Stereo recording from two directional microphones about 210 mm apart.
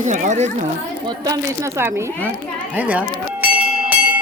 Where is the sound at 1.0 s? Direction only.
15° right (ahead or behind).